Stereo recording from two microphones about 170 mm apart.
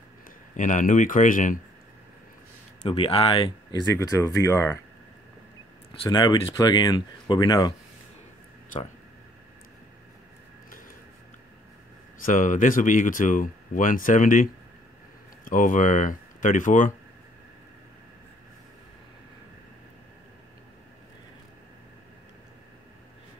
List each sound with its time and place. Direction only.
0.6 s speech: 50° left (ahead or behind)
2.8 s speech: 30° left (ahead or behind); by 4.7 s 15° left (ahead or behind)
6.0 s speech: 25° left (ahead or behind)
12.3 s speech: 50° left (ahead or behind)